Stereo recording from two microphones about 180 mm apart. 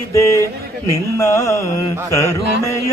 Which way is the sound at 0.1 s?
15° left (ahead or behind).